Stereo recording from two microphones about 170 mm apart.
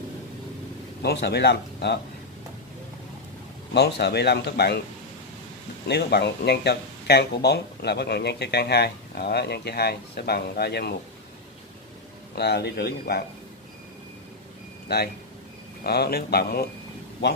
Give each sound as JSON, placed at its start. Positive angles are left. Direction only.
{"t": 1.0, "sound": "speech", "side_deg": 75}
{"t": 3.7, "sound": "speech", "side_deg": 75}
{"t": 5.9, "sound": "speech", "side_deg": 75}
{"t": 12.4, "sound": "speech", "side_deg": 75}
{"t": 14.9, "sound": "speech", "side_deg": 70}